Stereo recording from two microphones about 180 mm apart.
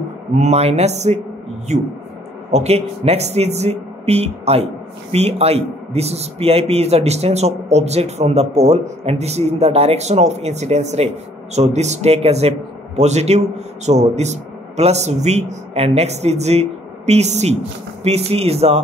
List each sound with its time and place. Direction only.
0.4 s a man's voice: 35° right (ahead or behind)